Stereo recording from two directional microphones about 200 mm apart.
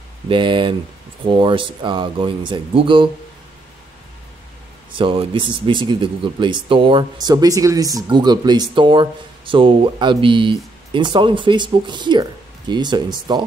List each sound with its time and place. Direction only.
0.3 s speech: 25° right (ahead or behind)
4.9 s speech: 25° right (ahead or behind)